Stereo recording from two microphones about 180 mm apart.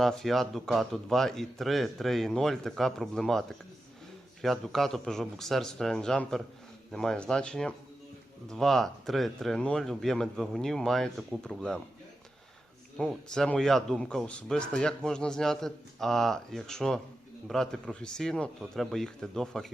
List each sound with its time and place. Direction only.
0.0 s speech: centre (ahead or behind)
13.0 s speech: centre (ahead or behind)